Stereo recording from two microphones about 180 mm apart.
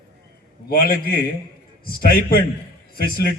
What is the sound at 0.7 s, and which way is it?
A man's voice, 55° left (ahead or behind).